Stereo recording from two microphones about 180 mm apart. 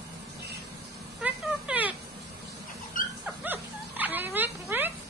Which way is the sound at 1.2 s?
10° right (ahead or behind).